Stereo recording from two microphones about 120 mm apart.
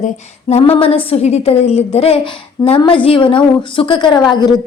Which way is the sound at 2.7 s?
45° left (ahead or behind).